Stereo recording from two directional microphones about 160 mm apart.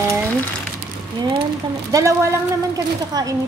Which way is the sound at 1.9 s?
20° right (ahead or behind).